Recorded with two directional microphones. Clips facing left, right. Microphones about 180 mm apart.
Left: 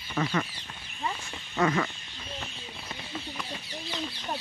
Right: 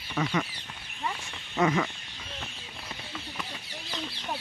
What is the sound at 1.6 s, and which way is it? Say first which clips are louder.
Speech: right 1 dB; 20° right (ahead or behind).